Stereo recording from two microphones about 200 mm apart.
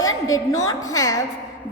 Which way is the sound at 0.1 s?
90° left.